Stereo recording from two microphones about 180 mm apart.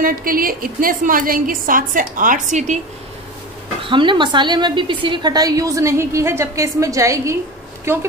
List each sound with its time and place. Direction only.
0.0 s a woman's voice: 50° right (ahead or behind)
3.8 s a woman's voice: 25° right (ahead or behind)